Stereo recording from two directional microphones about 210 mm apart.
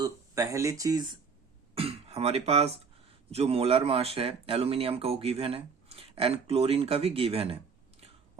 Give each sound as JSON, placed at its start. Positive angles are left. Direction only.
{"t": 0.0, "sound": "speech", "side_deg": -15}
{"t": 1.7, "sound": "throat clearing", "side_deg": -25}
{"t": 3.1, "sound": "a man's voice", "side_deg": -30}